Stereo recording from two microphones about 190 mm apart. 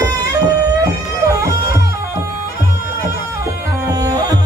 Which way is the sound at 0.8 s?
15° right (ahead or behind).